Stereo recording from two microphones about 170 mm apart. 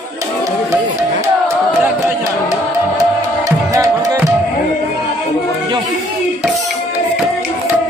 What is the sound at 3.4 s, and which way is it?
Music, 20° right (ahead or behind).